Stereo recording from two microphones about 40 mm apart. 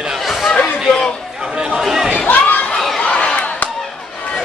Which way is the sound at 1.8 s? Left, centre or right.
Centre.